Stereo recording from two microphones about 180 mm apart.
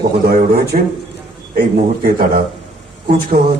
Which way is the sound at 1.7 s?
55° right (ahead or behind).